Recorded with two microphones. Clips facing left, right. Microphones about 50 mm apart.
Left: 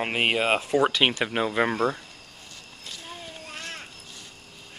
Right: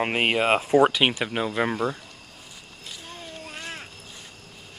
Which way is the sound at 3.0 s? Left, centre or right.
Centre.